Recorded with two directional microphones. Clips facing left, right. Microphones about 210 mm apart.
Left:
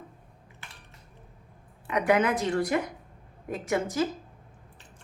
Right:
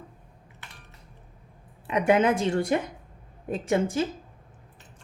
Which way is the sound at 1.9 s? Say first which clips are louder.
Right 3 dB; 25° right (ahead or behind).